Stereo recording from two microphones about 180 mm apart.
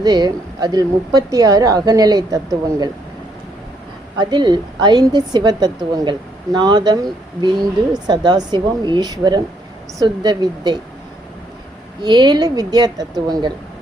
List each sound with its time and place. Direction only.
0.0 s a woman's voice: 20° right (ahead or behind)
4.2 s a woman's voice: 25° right (ahead or behind)
12.0 s a woman's voice: 25° right (ahead or behind)